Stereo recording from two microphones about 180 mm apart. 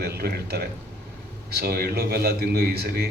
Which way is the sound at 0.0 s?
60° right (ahead or behind).